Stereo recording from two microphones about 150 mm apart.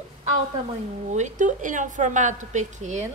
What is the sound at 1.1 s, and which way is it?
A woman's voice, 55° right (ahead or behind).